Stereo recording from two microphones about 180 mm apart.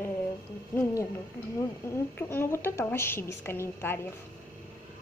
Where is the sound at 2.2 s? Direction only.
10° left (ahead or behind).